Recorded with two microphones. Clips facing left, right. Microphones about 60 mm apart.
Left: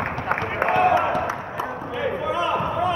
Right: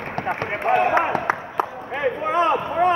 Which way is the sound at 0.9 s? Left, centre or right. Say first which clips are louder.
Even; right.